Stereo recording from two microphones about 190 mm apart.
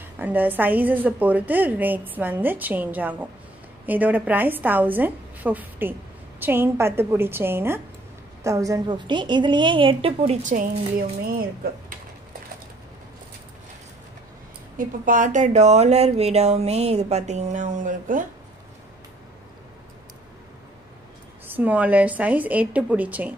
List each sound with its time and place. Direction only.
0.0 s a woman's voice: 10° right (ahead or behind); by 11.1 s 40° right (ahead or behind)
14.8 s speech: 45° right (ahead or behind)
21.5 s a woman's voice: 10° right (ahead or behind)